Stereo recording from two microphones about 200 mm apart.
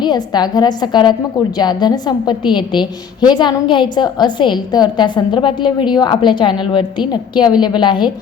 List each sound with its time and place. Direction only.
0.0 s a woman's voice: 20° left (ahead or behind)